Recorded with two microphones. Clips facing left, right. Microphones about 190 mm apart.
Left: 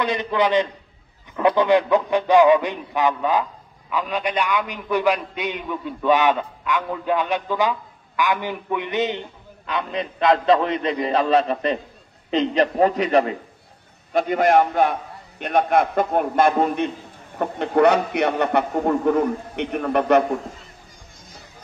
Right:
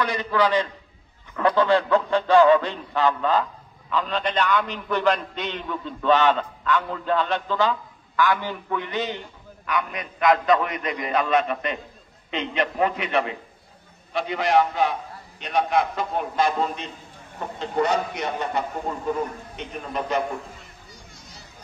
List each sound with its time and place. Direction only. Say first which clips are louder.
0.0 s a man's voice: left 2 dB; 20° left (ahead or behind); by 20.2 s 65° left (ahead or behind)